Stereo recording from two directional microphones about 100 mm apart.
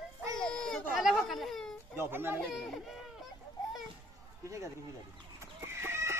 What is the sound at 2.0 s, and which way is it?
Speech, 20° right (ahead or behind).